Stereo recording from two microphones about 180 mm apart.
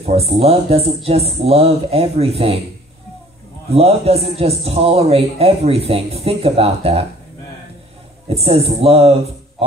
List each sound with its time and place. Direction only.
0.0 s a man's voice: 35° right (ahead or behind)
3.7 s a man's voice: 35° right (ahead or behind)
8.3 s a man's voice: 35° right (ahead or behind)